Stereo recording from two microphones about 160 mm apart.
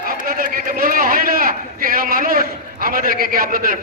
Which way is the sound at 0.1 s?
60° right (ahead or behind).